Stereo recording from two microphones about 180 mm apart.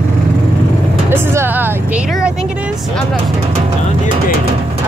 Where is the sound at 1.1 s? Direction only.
15° right (ahead or behind).